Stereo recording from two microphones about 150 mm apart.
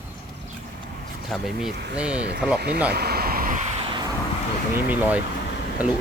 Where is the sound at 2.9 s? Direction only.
90° right; by 3.6 s 70° right (ahead or behind).